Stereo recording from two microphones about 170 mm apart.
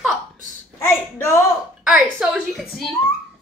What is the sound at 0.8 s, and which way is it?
Speech, 15° left (ahead or behind).